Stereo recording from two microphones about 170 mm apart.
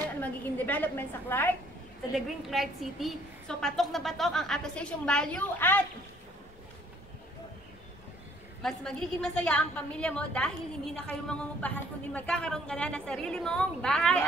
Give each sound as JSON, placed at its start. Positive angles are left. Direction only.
{"t": 0.2, "sound": "a woman's voice", "side_deg": 10}
{"t": 2.1, "sound": "a woman's voice", "side_deg": 0}
{"t": 8.6, "sound": "a woman's voice", "side_deg": 5}